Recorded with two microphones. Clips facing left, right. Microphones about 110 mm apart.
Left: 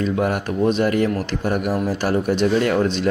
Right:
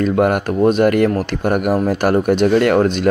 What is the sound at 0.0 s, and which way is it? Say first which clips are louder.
Speech: right 6 dB; 60° right (ahead or behind).